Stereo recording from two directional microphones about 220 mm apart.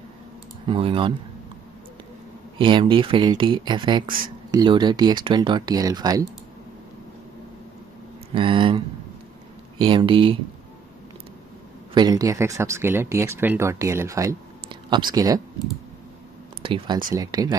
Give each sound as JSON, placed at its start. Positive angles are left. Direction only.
{"t": 0.7, "sound": "speech", "side_deg": -25}
{"t": 2.6, "sound": "speech", "side_deg": -20}
{"t": 8.3, "sound": "speech", "side_deg": -25}
{"t": 11.9, "sound": "speech", "side_deg": -15}
{"t": 16.6, "sound": "speech", "side_deg": -20}